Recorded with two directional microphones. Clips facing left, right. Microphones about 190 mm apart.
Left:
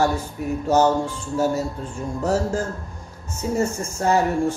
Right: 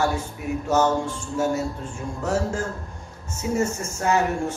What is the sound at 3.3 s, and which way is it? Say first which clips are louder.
Speech: left 1 dB; 35° left (ahead or behind).